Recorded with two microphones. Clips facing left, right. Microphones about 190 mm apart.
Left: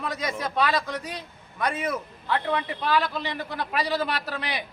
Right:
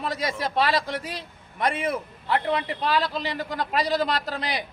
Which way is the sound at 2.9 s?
15° right (ahead or behind).